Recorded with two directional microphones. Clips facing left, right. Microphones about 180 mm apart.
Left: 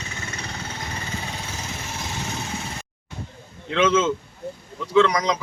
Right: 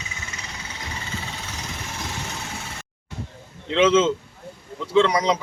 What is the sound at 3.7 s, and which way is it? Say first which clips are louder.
A man's voice: right 2 dB; 25° right (ahead or behind).